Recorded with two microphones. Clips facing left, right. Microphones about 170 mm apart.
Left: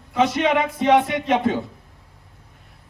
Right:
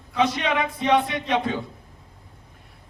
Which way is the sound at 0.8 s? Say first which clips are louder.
Left 4 dB; 20° left (ahead or behind).